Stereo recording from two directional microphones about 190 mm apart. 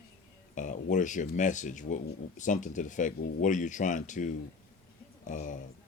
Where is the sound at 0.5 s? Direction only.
40° left (ahead or behind).